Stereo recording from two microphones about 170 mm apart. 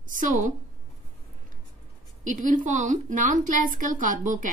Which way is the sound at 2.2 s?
50° right (ahead or behind).